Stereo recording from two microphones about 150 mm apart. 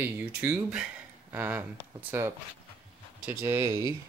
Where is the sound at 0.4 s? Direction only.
10° right (ahead or behind).